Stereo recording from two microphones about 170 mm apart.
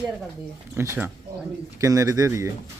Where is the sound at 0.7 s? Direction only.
15° right (ahead or behind).